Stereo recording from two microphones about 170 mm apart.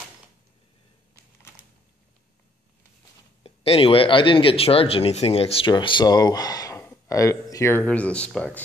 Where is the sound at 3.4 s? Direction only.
35° left (ahead or behind).